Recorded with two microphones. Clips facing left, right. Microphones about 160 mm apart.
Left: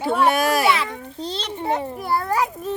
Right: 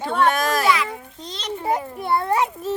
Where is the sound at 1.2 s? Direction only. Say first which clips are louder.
Left 4 dB; 30° left (ahead or behind).